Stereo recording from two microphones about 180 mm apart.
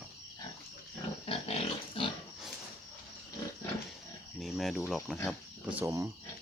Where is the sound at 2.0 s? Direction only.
30° left (ahead or behind).